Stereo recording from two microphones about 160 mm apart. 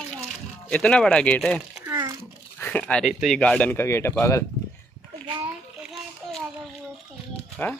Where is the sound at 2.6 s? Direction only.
10° left (ahead or behind).